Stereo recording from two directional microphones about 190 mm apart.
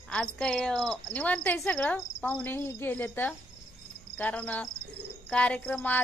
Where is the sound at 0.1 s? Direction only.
5° left (ahead or behind).